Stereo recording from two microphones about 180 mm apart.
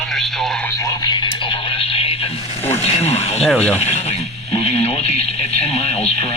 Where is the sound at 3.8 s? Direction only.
35° left (ahead or behind).